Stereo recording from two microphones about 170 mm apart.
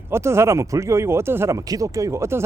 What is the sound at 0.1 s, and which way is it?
Speech, 15° right (ahead or behind).